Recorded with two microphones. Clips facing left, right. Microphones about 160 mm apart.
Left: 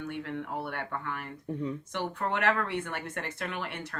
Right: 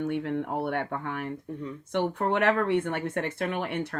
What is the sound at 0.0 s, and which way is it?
A woman's voice, 55° right (ahead or behind).